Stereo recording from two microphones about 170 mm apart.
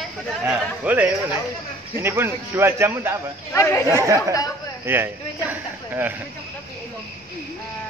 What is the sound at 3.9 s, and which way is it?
Speech, 15° right (ahead or behind).